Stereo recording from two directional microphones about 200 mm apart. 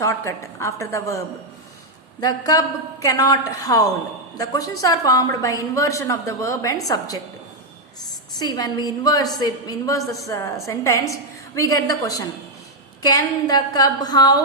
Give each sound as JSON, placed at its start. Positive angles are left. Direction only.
{"t": 0.0, "sound": "a woman's voice", "side_deg": 15}
{"t": 8.4, "sound": "a woman's voice", "side_deg": 20}